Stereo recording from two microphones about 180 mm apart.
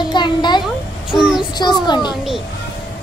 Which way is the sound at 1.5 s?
25° left (ahead or behind).